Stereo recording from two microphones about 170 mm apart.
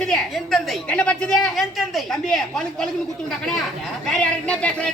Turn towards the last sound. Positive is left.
turn(degrees=5)  # may be behind; listen again after turning